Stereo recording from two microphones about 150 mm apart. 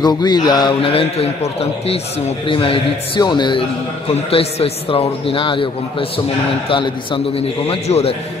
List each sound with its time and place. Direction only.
0.0 s a man's voice: 30° left (ahead or behind)
4.1 s a man's voice: 45° left (ahead or behind)